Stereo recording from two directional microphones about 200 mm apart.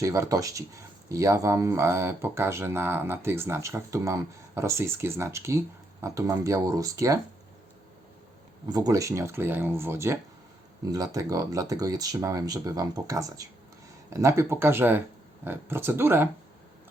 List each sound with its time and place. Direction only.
0.0 s speech: 15° right (ahead or behind)
8.7 s speech: 15° right (ahead or behind)